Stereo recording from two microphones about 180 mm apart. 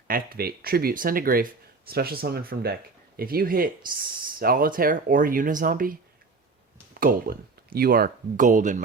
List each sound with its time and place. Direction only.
0.1 s speech: 55° right (ahead or behind)
7.0 s speech: 55° right (ahead or behind)